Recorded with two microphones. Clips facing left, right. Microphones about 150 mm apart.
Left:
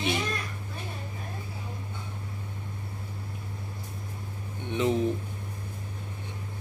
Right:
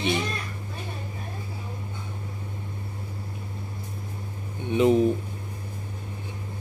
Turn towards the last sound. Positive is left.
turn(degrees=-15)  # may be behind; listen again after turning